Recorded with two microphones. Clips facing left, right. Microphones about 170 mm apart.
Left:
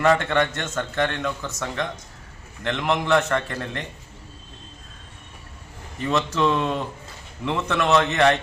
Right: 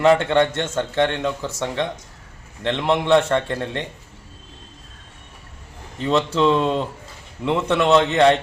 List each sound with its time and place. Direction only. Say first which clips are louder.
0.0 s a man's voice: right 4 dB; 25° right (ahead or behind)
6.1 s a man's voice: right 4 dB; 30° right (ahead or behind)